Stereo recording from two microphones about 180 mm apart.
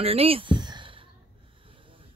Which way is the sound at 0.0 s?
35° right (ahead or behind).